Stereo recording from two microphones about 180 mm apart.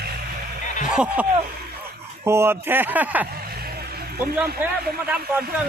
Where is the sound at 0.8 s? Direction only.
5° right (ahead or behind).